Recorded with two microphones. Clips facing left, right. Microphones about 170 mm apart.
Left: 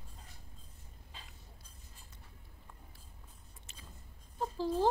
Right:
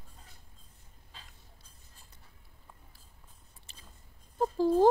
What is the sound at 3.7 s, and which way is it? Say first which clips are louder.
Biting: left 2 dB; 35° right (ahead or behind).